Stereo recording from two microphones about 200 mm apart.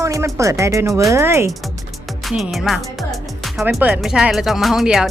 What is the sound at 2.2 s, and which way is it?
Speech, centre (ahead or behind).